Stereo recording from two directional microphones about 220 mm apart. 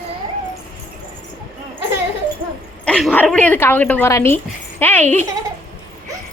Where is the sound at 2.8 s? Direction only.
5° left (ahead or behind).